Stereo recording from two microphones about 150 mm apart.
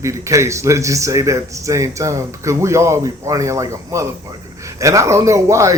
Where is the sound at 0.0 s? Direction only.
20° right (ahead or behind).